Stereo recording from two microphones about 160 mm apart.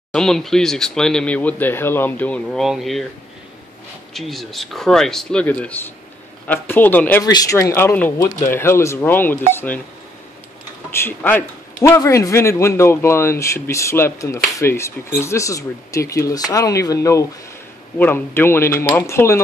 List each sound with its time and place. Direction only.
0.1 s speech: 5° left (ahead or behind)
4.1 s speech: centre (ahead or behind)
7.2 s speech: 20° left (ahead or behind)
11.0 s a man's voice: 10° left (ahead or behind)